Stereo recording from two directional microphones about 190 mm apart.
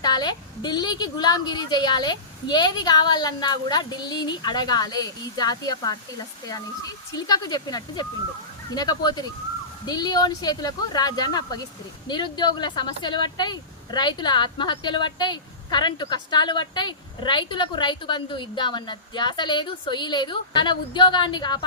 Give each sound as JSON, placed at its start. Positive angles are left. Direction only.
{"t": 0.0, "sound": "speech", "side_deg": 20}
{"t": 7.2, "sound": "speech", "side_deg": 20}